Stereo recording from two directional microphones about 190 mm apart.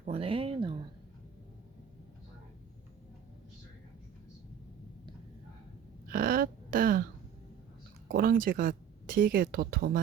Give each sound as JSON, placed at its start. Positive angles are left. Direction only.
{"t": 0.0, "sound": "speech", "side_deg": -30}
{"t": 6.1, "sound": "a sound", "side_deg": -50}
{"t": 8.0, "sound": "speech", "side_deg": -50}